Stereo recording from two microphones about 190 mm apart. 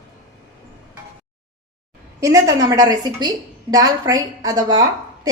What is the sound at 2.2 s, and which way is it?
Speech, 15° right (ahead or behind).